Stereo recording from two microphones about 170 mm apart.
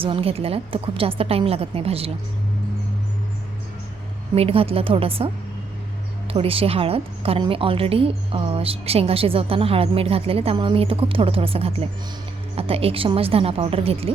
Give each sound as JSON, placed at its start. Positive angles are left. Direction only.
{"t": 0.0, "sound": "a woman's voice", "side_deg": -35}
{"t": 4.4, "sound": "a woman's voice", "side_deg": -35}